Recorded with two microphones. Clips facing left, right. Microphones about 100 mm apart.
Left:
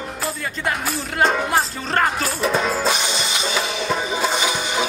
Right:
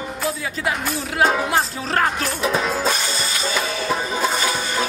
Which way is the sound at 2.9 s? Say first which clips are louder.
Left 1 dB; 20° left (ahead or behind).